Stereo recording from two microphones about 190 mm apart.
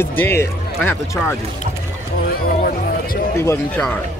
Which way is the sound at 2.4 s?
50° left (ahead or behind).